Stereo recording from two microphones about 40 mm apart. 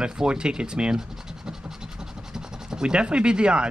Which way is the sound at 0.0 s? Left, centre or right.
Centre.